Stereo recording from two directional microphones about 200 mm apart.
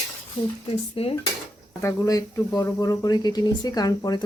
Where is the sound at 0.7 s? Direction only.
30° left (ahead or behind).